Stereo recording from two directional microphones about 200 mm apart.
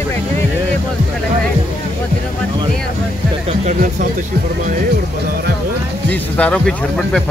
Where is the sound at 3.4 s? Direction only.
35° right (ahead or behind).